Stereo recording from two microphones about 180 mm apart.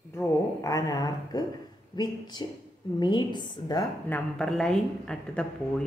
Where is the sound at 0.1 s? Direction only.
15° left (ahead or behind).